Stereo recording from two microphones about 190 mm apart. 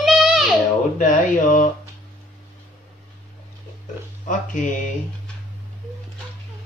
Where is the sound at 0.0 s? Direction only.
5° right (ahead or behind).